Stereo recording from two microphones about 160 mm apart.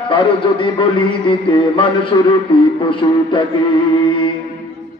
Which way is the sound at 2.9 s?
30° left (ahead or behind).